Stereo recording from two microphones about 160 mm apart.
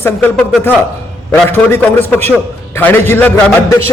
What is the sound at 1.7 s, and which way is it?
A man's voice, 10° left (ahead or behind).